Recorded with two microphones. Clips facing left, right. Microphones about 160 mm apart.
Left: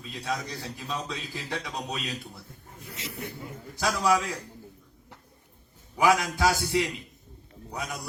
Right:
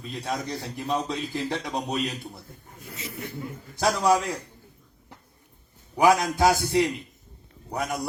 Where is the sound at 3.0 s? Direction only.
90° left.